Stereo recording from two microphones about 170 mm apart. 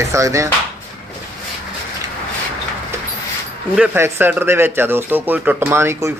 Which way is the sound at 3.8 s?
15° right (ahead or behind).